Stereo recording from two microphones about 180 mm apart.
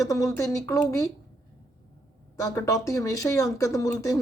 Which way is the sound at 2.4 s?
15° left (ahead or behind).